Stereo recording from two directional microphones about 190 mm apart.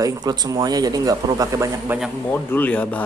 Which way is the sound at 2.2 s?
10° left (ahead or behind).